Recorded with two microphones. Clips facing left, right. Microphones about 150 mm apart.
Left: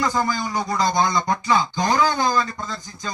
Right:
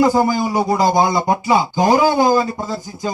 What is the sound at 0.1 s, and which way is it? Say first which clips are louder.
Speech: right 7 dB; 10° right (ahead or behind).